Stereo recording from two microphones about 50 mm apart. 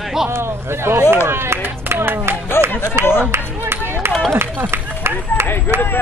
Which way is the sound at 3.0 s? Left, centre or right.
Right.